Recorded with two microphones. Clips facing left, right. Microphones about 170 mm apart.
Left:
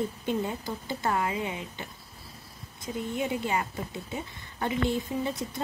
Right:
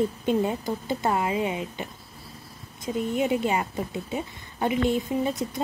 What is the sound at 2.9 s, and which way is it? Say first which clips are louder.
A woman's voice: right 6 dB; 20° right (ahead or behind).